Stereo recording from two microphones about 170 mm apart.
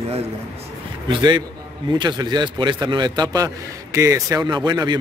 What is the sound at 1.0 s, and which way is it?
A man's voice, 25° right (ahead or behind).